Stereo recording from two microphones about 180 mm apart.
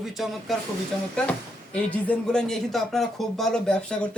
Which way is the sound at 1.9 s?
5° left (ahead or behind).